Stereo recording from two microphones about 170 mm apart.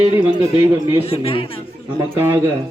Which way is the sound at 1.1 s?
35° left (ahead or behind).